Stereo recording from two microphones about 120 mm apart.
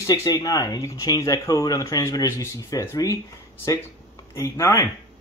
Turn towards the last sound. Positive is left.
turn(degrees=25)  # may be behind; listen again after turning